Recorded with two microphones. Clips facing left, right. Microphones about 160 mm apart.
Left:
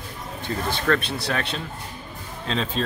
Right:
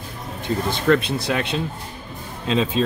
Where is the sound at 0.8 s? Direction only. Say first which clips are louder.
Right 6 dB; 15° right (ahead or behind).